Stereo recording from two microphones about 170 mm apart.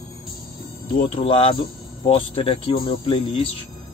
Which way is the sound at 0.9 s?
35° left (ahead or behind).